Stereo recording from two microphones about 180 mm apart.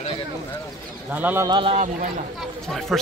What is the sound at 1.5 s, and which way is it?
Speech, 30° right (ahead or behind).